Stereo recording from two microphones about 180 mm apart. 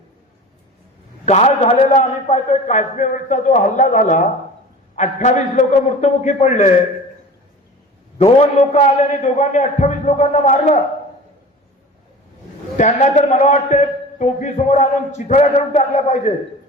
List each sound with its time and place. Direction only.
1.2 s a man's voice: 40° left (ahead or behind)
8.2 s a man's voice: 40° left (ahead or behind)
12.7 s a man's voice: 40° left (ahead or behind)